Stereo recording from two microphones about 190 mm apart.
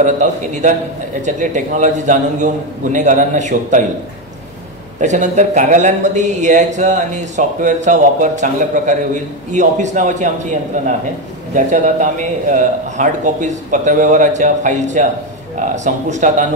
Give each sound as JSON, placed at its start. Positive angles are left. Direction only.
{"t": 0.0, "sound": "a man's voice", "side_deg": -40}
{"t": 5.0, "sound": "a man's voice", "side_deg": -40}